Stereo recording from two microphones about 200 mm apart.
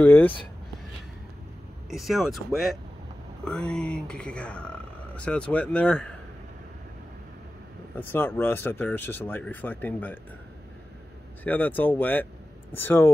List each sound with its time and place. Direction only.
0.0 s speech: 10° left (ahead or behind)
1.9 s speech: centre (ahead or behind)
7.9 s speech: 10° left (ahead or behind)
11.4 s speech: 10° left (ahead or behind)